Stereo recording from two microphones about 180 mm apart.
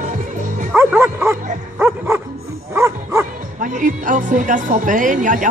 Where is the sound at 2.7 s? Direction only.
15° right (ahead or behind).